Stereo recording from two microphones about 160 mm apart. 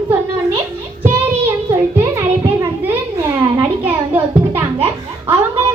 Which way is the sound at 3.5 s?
15° right (ahead or behind).